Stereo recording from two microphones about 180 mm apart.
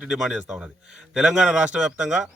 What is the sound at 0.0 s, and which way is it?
Speech, 5° right (ahead or behind).